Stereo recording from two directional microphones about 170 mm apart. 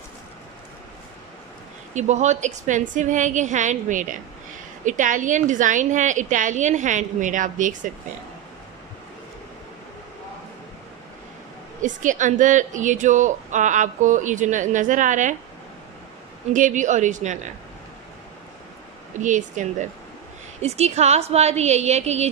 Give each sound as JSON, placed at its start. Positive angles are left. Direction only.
{"t": 2.0, "sound": "a woman's voice", "side_deg": -45}
{"t": 11.8, "sound": "a woman's voice", "side_deg": -50}
{"t": 16.5, "sound": "a woman's voice", "side_deg": -50}
{"t": 19.1, "sound": "a woman's voice", "side_deg": -45}